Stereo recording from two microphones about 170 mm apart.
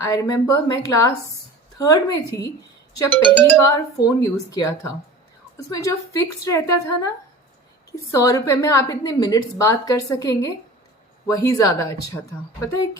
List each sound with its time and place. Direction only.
0.0 s a woman's voice: 20° left (ahead or behind)
3.6 s a woman's voice: 20° left (ahead or behind)
8.1 s a woman's voice: 20° left (ahead or behind)